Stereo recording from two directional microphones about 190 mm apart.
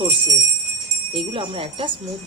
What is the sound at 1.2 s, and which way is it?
Speech, 30° right (ahead or behind).